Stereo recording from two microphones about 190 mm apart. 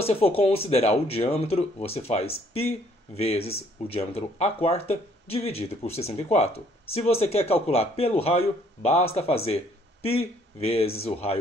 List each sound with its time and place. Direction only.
0.0 s speech: 30° left (ahead or behind)